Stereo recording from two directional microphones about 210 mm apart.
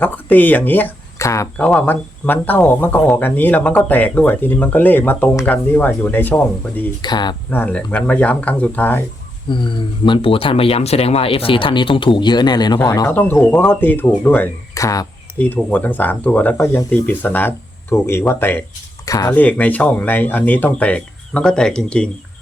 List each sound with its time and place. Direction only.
0.0 s speech: 10° left (ahead or behind)
7.0 s speech: 20° left (ahead or behind)
7.5 s speech: 5° left (ahead or behind)
9.5 s speech: 20° left (ahead or behind); by 22.1 s 5° left (ahead or behind)